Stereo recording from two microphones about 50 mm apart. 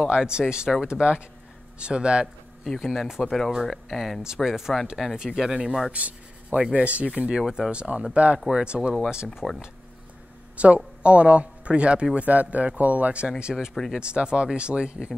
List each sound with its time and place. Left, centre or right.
0.1 s speech: centre
2.8 s speech: centre
3.1 s speech: centre
3.6 s speech: centre
4.4 s speech: centre
5.9 s speech: right
7.4 s speech: centre
7.7 s speech: right
10.6 s speech: right
13.4 s speech: centre